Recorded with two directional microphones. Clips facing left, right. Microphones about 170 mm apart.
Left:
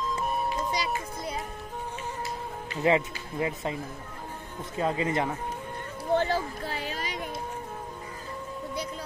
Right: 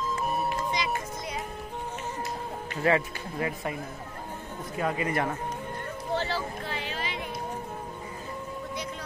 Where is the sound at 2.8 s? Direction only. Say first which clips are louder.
Left 1 dB; 20° left (ahead or behind).